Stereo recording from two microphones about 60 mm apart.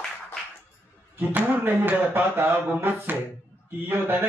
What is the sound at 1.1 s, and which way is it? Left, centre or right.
Speech, right.